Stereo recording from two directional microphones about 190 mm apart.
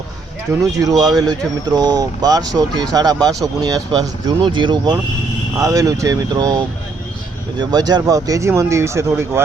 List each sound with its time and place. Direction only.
0.8 s speech: 20° right (ahead or behind)
7.6 s speech: 20° right (ahead or behind)